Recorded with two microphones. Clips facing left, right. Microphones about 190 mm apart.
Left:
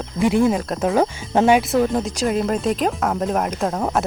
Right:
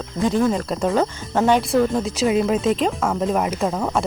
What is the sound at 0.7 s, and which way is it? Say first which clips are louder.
Speech: left 1 dB; centre (ahead or behind).